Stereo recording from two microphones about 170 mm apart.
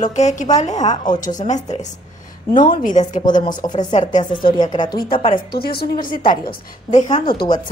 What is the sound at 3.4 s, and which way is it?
Speech, 25° left (ahead or behind).